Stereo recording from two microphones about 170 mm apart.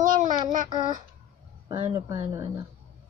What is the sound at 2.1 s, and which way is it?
Speech, 25° right (ahead or behind).